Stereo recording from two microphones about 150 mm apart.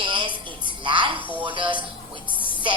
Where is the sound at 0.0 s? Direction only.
35° right (ahead or behind).